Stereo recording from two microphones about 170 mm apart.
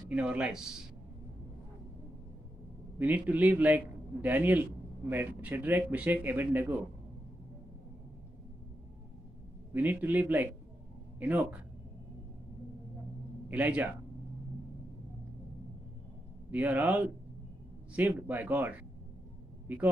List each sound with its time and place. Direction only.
0.1 s speech: 10° right (ahead or behind)
3.0 s speech: 10° right (ahead or behind)
9.7 s speech: 10° right (ahead or behind)
13.5 s speech: 10° right (ahead or behind)
16.4 s speech: 10° right (ahead or behind)